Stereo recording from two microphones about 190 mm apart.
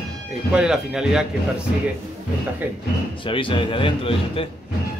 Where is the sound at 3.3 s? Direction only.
25° left (ahead or behind).